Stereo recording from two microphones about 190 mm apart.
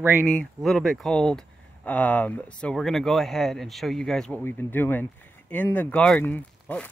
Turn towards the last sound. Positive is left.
turn(degrees=10)  # may be behind; listen again after turning